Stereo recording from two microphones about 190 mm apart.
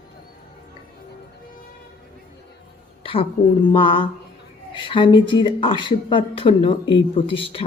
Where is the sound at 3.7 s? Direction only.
25° left (ahead or behind).